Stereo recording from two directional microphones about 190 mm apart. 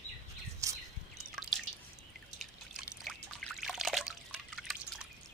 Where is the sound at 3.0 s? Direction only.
Centre (ahead or behind).